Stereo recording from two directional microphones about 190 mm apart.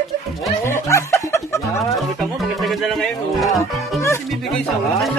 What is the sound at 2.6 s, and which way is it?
Music, centre (ahead or behind).